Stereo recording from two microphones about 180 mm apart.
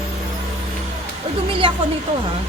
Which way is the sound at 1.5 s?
30° right (ahead or behind).